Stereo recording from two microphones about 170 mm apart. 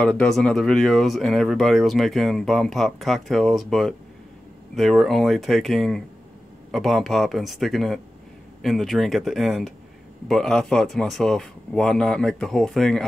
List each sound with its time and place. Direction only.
0.0 s speech: 5° left (ahead or behind)